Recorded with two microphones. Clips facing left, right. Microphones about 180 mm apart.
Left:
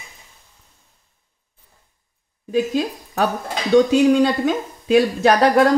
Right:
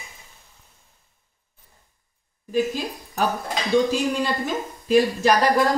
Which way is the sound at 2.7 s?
70° left (ahead or behind).